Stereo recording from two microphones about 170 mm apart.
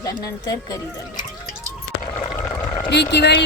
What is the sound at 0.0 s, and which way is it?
Speech, 25° left (ahead or behind).